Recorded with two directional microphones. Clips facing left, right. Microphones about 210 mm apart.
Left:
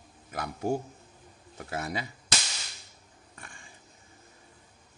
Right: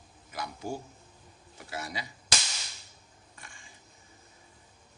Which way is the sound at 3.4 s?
55° left (ahead or behind).